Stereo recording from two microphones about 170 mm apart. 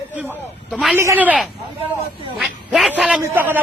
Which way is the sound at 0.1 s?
10° right (ahead or behind).